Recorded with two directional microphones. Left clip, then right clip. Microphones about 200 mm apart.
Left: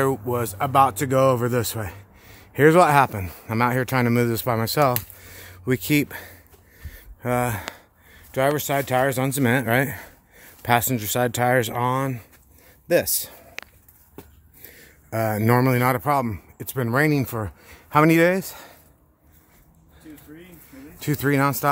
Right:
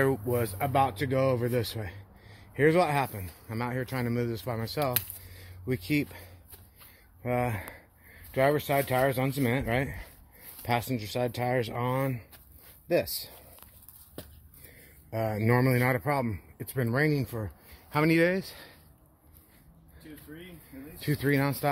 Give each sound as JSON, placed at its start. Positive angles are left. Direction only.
{"t": 0.0, "sound": "speech", "side_deg": 20}
{"t": 5.4, "sound": "speech", "side_deg": 55}
{"t": 7.2, "sound": "a man's voice", "side_deg": 30}
{"t": 12.8, "sound": "speech", "side_deg": 40}
{"t": 15.0, "sound": "a man's voice", "side_deg": 35}
{"t": 17.0, "sound": "speech", "side_deg": 45}
{"t": 17.9, "sound": "a man's voice", "side_deg": 30}
{"t": 21.0, "sound": "speech", "side_deg": 35}